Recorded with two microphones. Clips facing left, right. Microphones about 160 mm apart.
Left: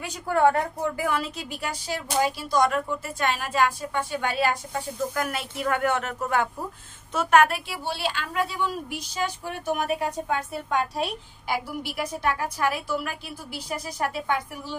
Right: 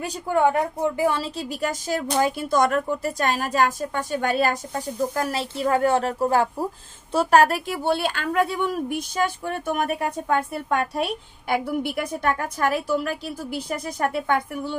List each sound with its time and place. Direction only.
0.3 s a woman's voice: 20° right (ahead or behind); by 14.8 s 55° right (ahead or behind)